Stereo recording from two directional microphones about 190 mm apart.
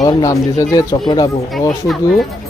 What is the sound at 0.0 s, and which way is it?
Speech, 15° left (ahead or behind).